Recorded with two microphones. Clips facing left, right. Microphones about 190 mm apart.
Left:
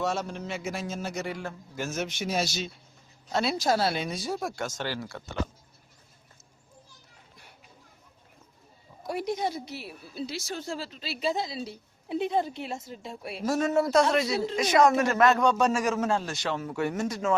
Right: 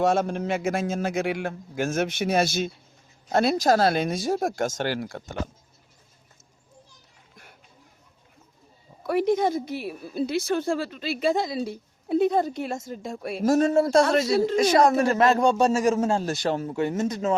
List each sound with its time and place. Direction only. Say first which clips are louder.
0.0 s a woman's voice: right 8 dB; 55° right (ahead or behind)
1.1 s a man's voice: right 7 dB; 85° right; by 5.4 s 45° right (ahead or behind)
9.0 s a woman's voice: right 8 dB; 50° right (ahead or behind)
13.7 s speech: right 4 dB; 30° right (ahead or behind)
14.1 s a woman's voice: right 5 dB; 40° right (ahead or behind)
14.6 s a man's voice: even; 35° right (ahead or behind)
16.7 s speech: right 4 dB; 20° right (ahead or behind)